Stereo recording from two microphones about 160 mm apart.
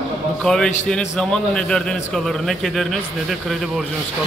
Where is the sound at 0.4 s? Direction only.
5° left (ahead or behind).